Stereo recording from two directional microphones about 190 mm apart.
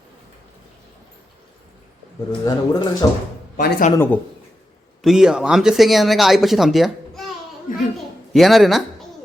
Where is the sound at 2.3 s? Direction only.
20° left (ahead or behind).